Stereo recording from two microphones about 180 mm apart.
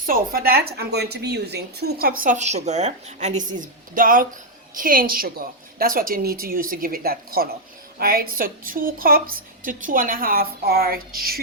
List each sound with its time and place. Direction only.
0.0 s a woman's voice: 55° right (ahead or behind)